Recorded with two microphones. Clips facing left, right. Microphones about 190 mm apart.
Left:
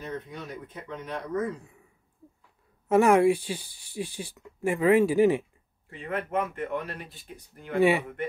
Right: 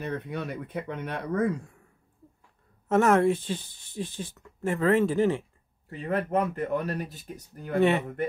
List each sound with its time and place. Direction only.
0.0 s speech: 65° right (ahead or behind)
2.9 s speech: 10° left (ahead or behind)
5.9 s speech: 40° right (ahead or behind)